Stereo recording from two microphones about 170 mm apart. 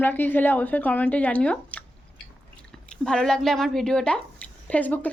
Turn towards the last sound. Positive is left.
turn(degrees=10)  # may be behind; listen again after turning